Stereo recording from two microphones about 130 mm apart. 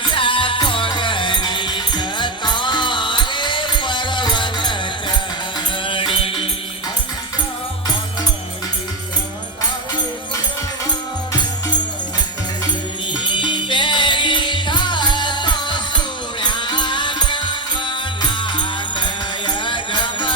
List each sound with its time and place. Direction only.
0.0 s music: 40° left (ahead or behind)
13.2 s music: 35° left (ahead or behind)